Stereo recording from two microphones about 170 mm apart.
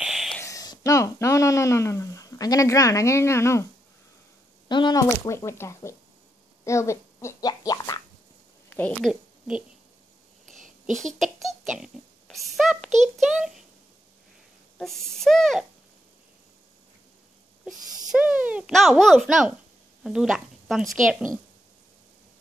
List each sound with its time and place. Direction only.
0.0 s a sound: centre (ahead or behind)
0.4 s speech: 20° left (ahead or behind)
4.6 s speech: 25° left (ahead or behind)
8.6 s a woman's voice: 10° left (ahead or behind)
10.4 s a sound: 50° right (ahead or behind)
11.4 s a child's voice: centre (ahead or behind)
14.8 s speech: centre (ahead or behind)
17.6 s speech: 5° right (ahead or behind)